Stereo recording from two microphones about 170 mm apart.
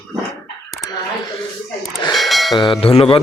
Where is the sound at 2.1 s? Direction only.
Centre (ahead or behind).